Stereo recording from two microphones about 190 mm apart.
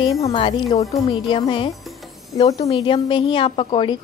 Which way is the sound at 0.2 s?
25° left (ahead or behind).